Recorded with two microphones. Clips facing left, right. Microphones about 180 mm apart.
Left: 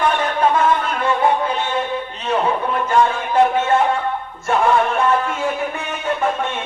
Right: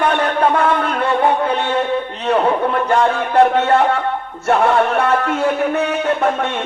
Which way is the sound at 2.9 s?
65° right (ahead or behind).